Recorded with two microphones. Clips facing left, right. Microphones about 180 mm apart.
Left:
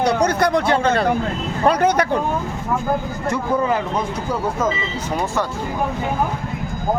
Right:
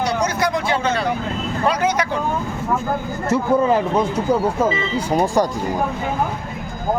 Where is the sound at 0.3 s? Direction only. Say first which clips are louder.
Left 3 dB; 60° left (ahead or behind).